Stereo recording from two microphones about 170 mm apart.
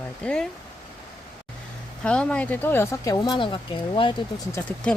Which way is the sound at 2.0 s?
5° left (ahead or behind).